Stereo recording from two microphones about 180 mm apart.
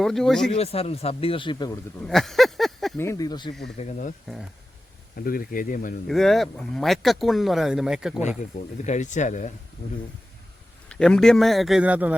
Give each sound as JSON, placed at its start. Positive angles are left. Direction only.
{"t": 0.0, "sound": "speech", "side_deg": 0}
{"t": 0.5, "sound": "speech", "side_deg": 35}
{"t": 2.0, "sound": "a sound", "side_deg": 0}
{"t": 3.0, "sound": "speech", "side_deg": 15}
{"t": 3.8, "sound": "speech", "side_deg": 45}
{"t": 5.2, "sound": "speech", "side_deg": 55}
{"t": 6.1, "sound": "speech", "side_deg": 0}
{"t": 8.8, "sound": "speech", "side_deg": 40}
{"t": 10.8, "sound": "speech", "side_deg": 5}